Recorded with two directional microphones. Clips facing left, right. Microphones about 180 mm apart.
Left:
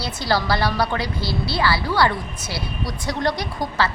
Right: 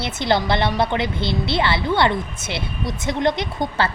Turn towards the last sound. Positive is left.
turn(degrees=-25)  # may be behind; listen again after turning